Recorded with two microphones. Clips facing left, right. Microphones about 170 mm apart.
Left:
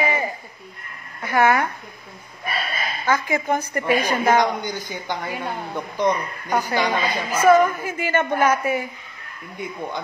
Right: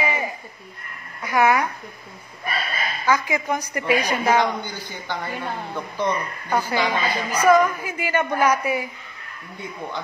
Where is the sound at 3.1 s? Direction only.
35° left (ahead or behind).